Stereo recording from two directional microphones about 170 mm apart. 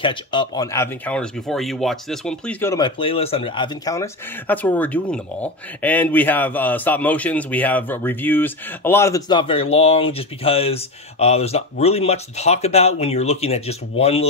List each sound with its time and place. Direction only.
0.0 s speech: 30° left (ahead or behind); by 2.5 s 5° left (ahead or behind)
2.6 s speech: 20° left (ahead or behind)
3.0 s speech: 35° left (ahead or behind)